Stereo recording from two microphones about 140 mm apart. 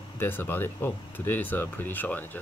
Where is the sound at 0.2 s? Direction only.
15° left (ahead or behind).